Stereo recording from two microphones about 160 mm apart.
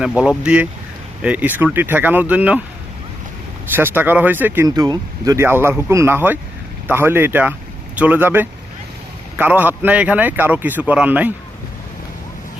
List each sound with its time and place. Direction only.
0.0 s speech: 5° right (ahead or behind)
3.7 s speech: 10° right (ahead or behind)
4.7 s speech: 25° right (ahead or behind)